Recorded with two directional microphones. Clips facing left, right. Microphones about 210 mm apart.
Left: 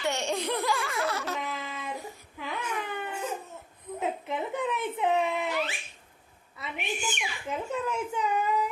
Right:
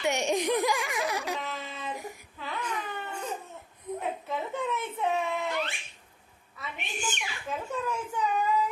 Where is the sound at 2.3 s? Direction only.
10° left (ahead or behind).